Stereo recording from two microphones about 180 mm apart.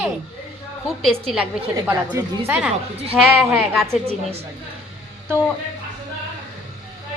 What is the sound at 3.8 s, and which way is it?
Speech, 35° right (ahead or behind).